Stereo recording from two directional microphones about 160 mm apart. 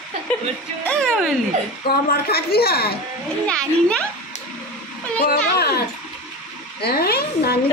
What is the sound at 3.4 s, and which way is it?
Speech, 5° left (ahead or behind).